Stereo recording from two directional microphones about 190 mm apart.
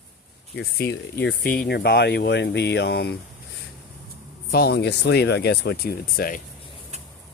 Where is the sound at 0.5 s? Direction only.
60° left (ahead or behind).